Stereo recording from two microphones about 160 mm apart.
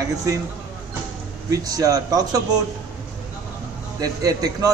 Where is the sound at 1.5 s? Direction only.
20° right (ahead or behind).